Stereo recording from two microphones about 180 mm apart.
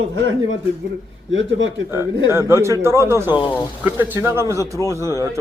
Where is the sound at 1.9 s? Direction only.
15° right (ahead or behind).